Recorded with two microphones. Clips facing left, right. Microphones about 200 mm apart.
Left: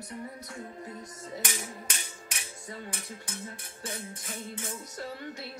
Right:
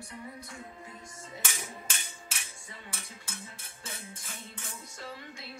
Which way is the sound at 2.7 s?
40° left (ahead or behind).